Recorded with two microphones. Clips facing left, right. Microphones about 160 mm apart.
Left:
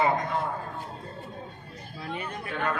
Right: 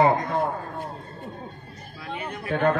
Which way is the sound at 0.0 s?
45° right (ahead or behind).